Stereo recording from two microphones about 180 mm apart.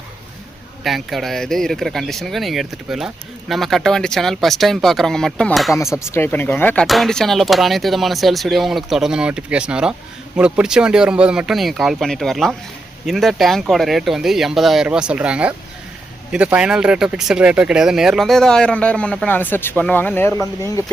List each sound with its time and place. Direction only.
0.9 s speech: centre (ahead or behind); by 20.8 s 15° left (ahead or behind)